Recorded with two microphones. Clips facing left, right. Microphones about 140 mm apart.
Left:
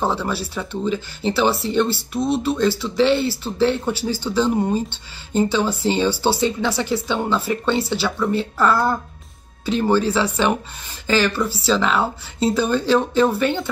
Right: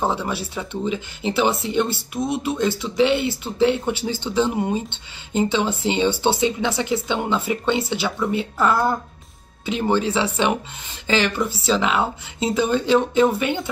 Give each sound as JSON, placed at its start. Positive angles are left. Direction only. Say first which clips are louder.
{"t": 0.0, "sound": "speech", "louder": "left 1 dB", "side_deg": -15}